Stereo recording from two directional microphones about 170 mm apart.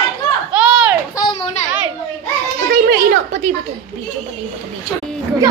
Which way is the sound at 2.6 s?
60° right (ahead or behind).